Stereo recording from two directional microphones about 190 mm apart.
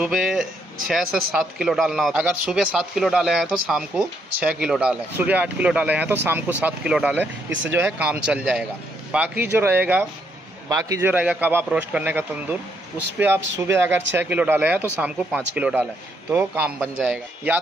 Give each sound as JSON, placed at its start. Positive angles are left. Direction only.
{"t": 0.0, "sound": "speech", "side_deg": -5}
{"t": 13.7, "sound": "speech", "side_deg": -10}